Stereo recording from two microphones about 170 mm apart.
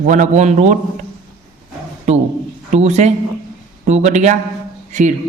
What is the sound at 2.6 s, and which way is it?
A man's voice, 45° right (ahead or behind).